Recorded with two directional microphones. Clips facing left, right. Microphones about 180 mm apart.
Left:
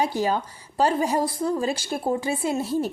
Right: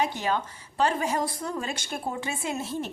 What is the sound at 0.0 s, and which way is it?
A woman's voice, 35° left (ahead or behind).